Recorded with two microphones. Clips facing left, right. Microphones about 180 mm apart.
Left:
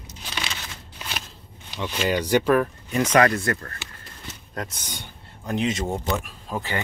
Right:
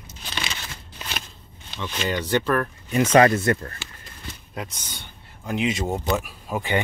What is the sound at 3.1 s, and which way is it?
Speech, 25° right (ahead or behind).